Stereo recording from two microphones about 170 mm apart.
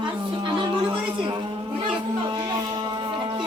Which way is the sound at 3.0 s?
25° right (ahead or behind).